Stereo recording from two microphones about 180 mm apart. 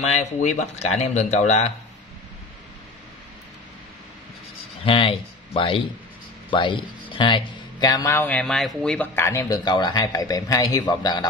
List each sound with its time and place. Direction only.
0.0 s speech: 40° left (ahead or behind)
4.8 s speech: 30° left (ahead or behind)